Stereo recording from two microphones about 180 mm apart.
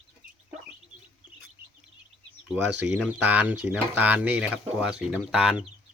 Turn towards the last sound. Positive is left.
turn(degrees=-5)  # may be behind; listen again after turning